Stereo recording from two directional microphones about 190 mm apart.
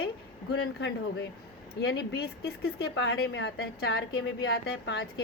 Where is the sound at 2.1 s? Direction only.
55° left (ahead or behind); by 3.6 s 80° left.